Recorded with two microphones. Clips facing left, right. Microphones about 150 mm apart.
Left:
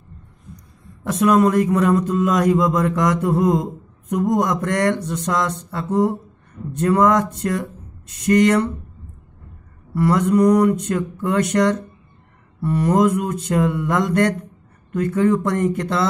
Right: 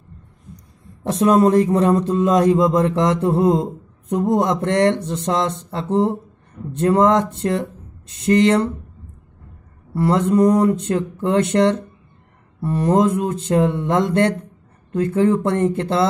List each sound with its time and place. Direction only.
1.0 s a man's voice: 30° right (ahead or behind)
9.9 s a man's voice: 25° right (ahead or behind)